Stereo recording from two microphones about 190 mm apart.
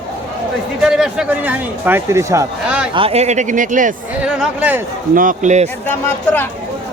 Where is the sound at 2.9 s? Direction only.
30° right (ahead or behind).